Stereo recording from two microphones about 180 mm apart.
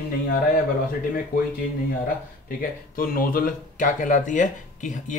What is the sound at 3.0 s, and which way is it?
Speech, 50° left (ahead or behind).